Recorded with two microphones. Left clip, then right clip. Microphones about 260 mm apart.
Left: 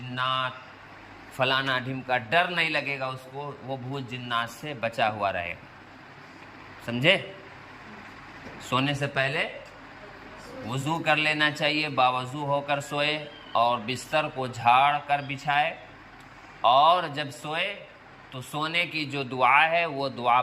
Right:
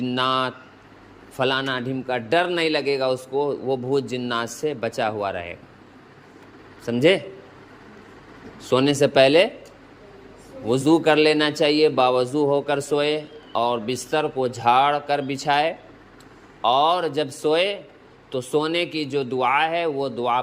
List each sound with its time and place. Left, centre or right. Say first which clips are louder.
0.1 s a man's voice: right 4 dB; right
6.8 s speech: right 4 dB; centre
8.6 s a man's voice: right 8 dB; right
10.7 s a man's voice: right 8 dB; right